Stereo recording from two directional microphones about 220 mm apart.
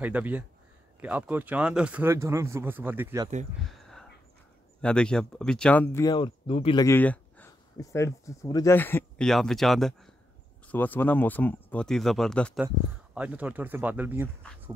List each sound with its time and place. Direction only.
0.0 s speech: 5° right (ahead or behind)
3.6 s a sound: centre (ahead or behind)
4.8 s speech: 5° left (ahead or behind)
6.0 s speech: 20° left (ahead or behind); by 14.3 s 10° right (ahead or behind)